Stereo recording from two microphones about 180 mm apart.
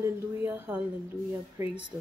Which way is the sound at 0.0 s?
15° right (ahead or behind).